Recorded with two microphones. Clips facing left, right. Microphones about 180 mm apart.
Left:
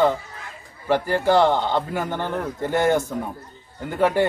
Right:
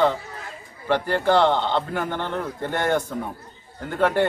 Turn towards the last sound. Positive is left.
turn(degrees=10)  # may be behind; listen again after turning